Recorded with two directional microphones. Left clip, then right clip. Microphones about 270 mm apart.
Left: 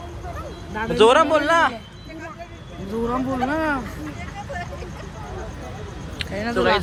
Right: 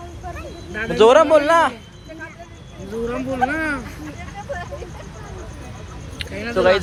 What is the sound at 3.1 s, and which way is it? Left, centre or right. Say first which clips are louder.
Speech: right 3 dB; centre.